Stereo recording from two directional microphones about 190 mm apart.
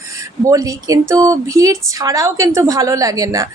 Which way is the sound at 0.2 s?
15° right (ahead or behind).